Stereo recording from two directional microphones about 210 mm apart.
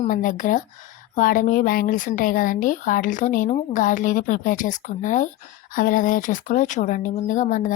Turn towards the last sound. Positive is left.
turn(degrees=40)  # may be behind; listen again after turning